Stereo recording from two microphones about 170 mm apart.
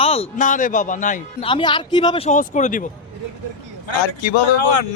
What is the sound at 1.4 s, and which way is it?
Speech, 30° left (ahead or behind).